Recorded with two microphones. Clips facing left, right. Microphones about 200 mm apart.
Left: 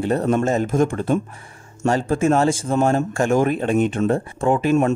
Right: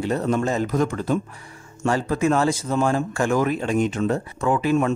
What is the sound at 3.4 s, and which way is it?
Speech, 55° left (ahead or behind).